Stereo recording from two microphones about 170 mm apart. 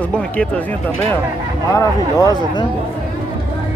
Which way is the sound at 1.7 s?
20° left (ahead or behind).